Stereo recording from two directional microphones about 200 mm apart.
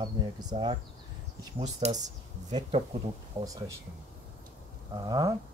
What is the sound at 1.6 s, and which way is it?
Speech, 35° right (ahead or behind).